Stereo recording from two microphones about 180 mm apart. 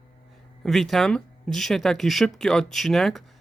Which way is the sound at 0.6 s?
Centre (ahead or behind).